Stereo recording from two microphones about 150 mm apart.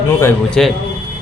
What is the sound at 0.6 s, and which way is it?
Speech, 5° left (ahead or behind).